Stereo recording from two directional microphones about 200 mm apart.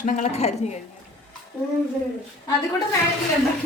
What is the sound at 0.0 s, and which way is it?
Speech, 40° left (ahead or behind).